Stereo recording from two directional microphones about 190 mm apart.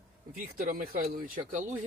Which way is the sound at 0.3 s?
45° right (ahead or behind).